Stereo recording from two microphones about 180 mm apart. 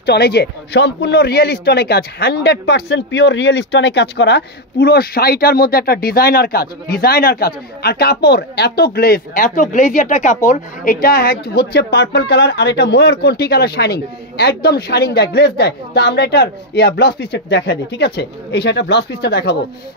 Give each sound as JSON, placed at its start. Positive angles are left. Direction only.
{"t": 0.0, "sound": "speech", "side_deg": 65}
{"t": 10.9, "sound": "speech", "side_deg": 55}